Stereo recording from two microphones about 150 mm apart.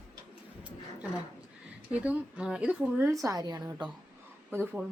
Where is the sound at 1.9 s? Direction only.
5° right (ahead or behind).